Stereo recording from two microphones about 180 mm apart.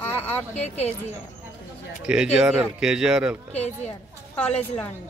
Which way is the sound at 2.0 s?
5° right (ahead or behind).